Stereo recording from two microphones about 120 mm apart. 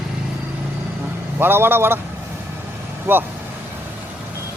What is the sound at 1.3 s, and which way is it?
Speech, 20° right (ahead or behind).